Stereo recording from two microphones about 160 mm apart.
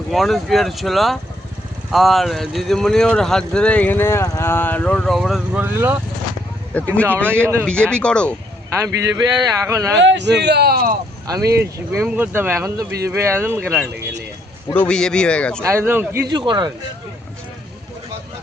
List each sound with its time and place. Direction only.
0.1 s speech: centre (ahead or behind)
5.6 s speech: 10° right (ahead or behind)
6.7 s speech: 10° left (ahead or behind)
8.7 s speech: 20° right (ahead or behind)
9.9 s speech: 90° right; by 10.9 s 70° right (ahead or behind)
11.3 s speech: 20° right (ahead or behind)
14.7 s speech: 10° left (ahead or behind)
15.6 s speech: 15° right (ahead or behind)
16.3 s speech: 30° right (ahead or behind)